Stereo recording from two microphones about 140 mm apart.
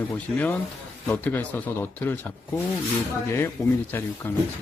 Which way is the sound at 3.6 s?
20° left (ahead or behind).